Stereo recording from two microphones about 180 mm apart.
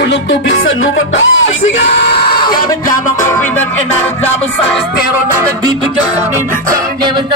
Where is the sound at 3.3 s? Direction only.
10° left (ahead or behind).